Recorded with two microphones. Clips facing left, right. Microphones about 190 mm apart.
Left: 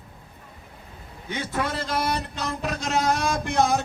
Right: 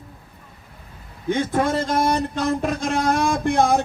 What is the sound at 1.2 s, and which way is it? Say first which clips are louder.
Speech: right 8 dB; 50° right (ahead or behind).